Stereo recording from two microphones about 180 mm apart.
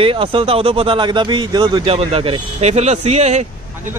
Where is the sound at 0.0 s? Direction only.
30° right (ahead or behind).